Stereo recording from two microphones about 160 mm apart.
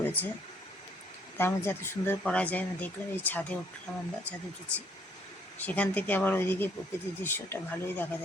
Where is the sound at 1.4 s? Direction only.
15° left (ahead or behind).